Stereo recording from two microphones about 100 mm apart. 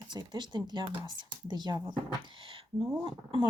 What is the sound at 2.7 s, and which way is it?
Speech, 25° right (ahead or behind).